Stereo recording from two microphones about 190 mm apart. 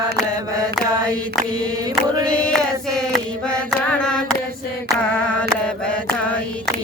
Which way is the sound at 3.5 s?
5° left (ahead or behind).